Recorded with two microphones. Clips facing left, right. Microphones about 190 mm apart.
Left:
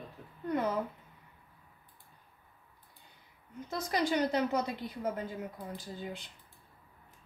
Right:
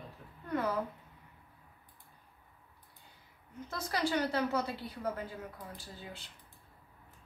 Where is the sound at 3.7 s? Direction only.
15° left (ahead or behind).